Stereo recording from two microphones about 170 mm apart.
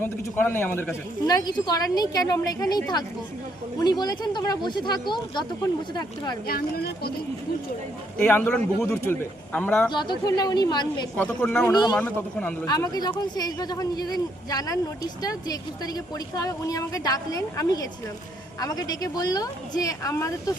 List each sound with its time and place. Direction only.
0.0 s a man's voice: 10° left (ahead or behind)
1.3 s speech: 25° left (ahead or behind)
6.5 s speech: 65° left (ahead or behind)
8.2 s a man's voice: 10° left (ahead or behind)
9.9 s speech: 25° left (ahead or behind)
11.2 s a man's voice: 10° left (ahead or behind)
11.7 s speech: 25° left (ahead or behind)
11.9 s a man's voice: 10° left (ahead or behind)
12.6 s speech: 20° left (ahead or behind)